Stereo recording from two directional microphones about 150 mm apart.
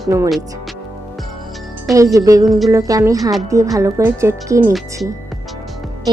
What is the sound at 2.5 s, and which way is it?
Speech, centre (ahead or behind).